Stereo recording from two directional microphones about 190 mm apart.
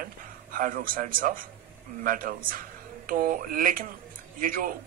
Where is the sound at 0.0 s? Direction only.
45° right (ahead or behind).